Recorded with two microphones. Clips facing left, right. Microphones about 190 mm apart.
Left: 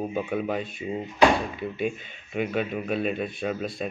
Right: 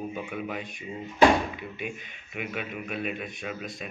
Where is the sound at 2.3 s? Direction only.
30° left (ahead or behind).